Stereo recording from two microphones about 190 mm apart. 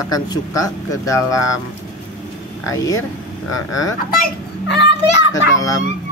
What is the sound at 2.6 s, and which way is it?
Speech, 15° left (ahead or behind).